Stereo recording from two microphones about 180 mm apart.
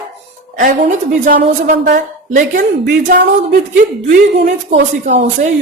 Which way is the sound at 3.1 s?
65° right (ahead or behind).